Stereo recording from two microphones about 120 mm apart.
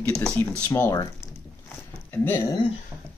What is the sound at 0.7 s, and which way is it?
Speech, 25° left (ahead or behind).